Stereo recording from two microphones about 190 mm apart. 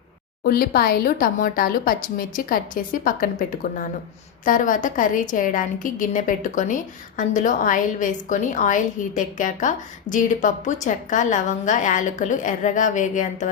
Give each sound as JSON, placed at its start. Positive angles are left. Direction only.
{"t": 0.4, "sound": "a woman's voice", "side_deg": 50}